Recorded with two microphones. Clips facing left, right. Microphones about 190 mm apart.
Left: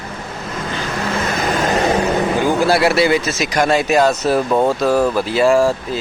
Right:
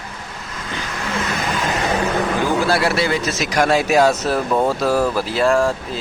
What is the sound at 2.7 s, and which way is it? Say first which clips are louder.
Speech: left 4 dB; 10° left (ahead or behind).